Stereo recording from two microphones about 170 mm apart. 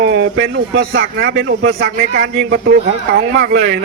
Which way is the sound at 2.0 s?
55° right (ahead or behind).